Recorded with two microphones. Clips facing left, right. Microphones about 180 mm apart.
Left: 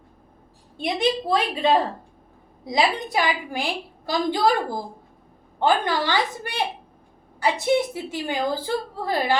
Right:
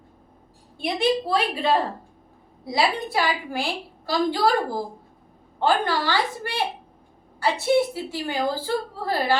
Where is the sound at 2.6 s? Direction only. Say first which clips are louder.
Left 1 dB; 20° left (ahead or behind).